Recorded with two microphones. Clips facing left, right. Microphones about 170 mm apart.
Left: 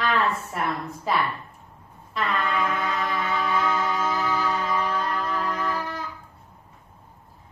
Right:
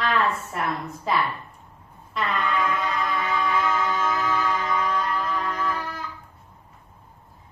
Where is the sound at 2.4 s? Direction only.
30° left (ahead or behind).